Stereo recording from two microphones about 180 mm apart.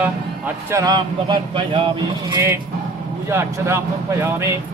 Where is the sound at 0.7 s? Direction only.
20° right (ahead or behind).